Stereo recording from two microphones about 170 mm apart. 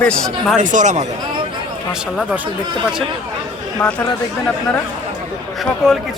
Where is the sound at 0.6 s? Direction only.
45° right (ahead or behind).